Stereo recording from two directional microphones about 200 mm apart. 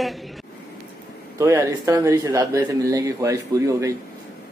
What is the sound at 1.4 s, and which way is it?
A man's voice, 15° right (ahead or behind).